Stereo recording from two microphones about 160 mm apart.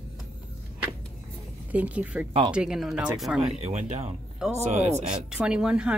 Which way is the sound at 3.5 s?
45° right (ahead or behind).